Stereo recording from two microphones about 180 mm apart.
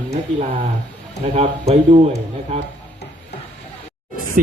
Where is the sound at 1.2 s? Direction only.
35° right (ahead or behind).